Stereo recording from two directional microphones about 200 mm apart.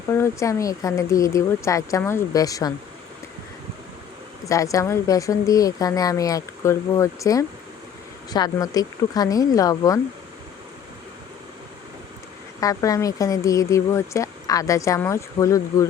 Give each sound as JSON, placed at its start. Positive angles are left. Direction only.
{"t": 0.1, "sound": "speech", "side_deg": 15}
{"t": 4.4, "sound": "speech", "side_deg": 15}
{"t": 12.5, "sound": "speech", "side_deg": 15}